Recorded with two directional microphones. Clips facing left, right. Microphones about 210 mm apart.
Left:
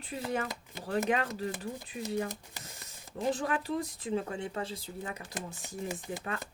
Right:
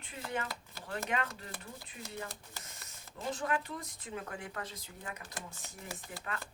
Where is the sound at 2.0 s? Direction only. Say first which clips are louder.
Left 10 dB; 20° left (ahead or behind).